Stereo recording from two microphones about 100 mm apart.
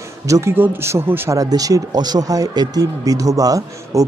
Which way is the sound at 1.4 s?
35° right (ahead or behind).